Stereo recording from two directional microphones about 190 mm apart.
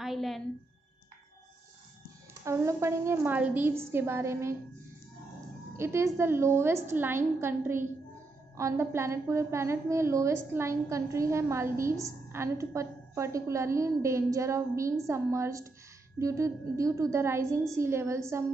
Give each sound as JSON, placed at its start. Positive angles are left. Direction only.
{"t": 0.0, "sound": "a sound", "side_deg": 0}
{"t": 2.4, "sound": "a woman's voice", "side_deg": -15}
{"t": 5.8, "sound": "a woman's voice", "side_deg": -15}